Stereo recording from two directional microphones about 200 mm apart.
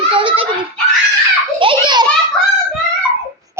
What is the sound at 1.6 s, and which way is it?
Speech, 25° right (ahead or behind).